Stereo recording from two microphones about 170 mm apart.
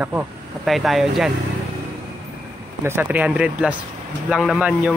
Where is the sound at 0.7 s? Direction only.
Centre (ahead or behind).